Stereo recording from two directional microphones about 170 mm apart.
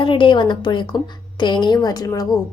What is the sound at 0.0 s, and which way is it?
A woman's voice, 30° left (ahead or behind).